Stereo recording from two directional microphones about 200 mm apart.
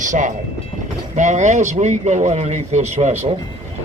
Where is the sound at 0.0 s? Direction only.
40° right (ahead or behind).